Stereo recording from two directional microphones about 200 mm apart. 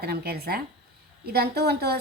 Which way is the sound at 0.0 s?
50° right (ahead or behind).